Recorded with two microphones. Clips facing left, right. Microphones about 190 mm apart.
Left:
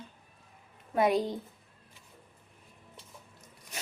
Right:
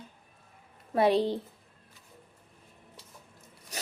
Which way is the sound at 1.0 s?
30° right (ahead or behind).